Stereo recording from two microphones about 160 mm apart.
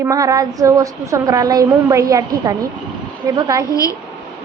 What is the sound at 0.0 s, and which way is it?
A woman's voice, 20° right (ahead or behind).